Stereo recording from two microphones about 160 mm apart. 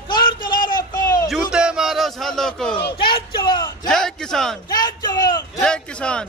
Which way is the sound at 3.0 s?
30° left (ahead or behind).